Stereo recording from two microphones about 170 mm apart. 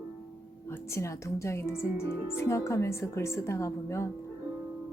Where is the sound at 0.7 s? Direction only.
15° left (ahead or behind).